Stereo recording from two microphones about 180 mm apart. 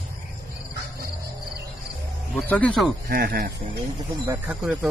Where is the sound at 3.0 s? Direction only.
55° right (ahead or behind).